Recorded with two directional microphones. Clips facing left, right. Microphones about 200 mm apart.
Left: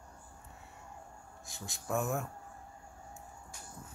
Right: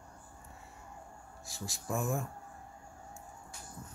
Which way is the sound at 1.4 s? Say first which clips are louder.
Even; centre (ahead or behind).